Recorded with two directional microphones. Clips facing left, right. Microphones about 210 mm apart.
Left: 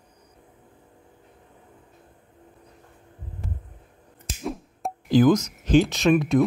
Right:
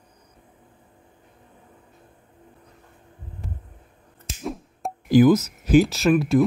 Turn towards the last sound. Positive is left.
turn(degrees=-5)  # may be behind; listen again after turning